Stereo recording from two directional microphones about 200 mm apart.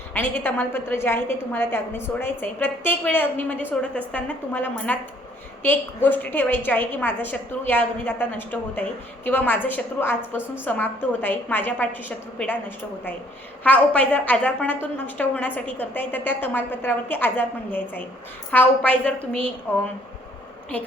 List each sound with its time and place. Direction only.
0.1 s a woman's voice: 10° left (ahead or behind)